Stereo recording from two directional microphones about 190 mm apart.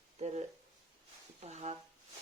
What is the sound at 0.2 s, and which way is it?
Speech, 35° right (ahead or behind).